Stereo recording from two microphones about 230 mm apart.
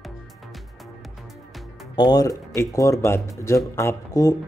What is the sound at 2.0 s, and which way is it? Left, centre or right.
Speech, centre.